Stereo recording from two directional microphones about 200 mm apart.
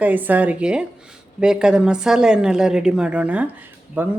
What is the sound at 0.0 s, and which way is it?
A woman's voice, 10° right (ahead or behind).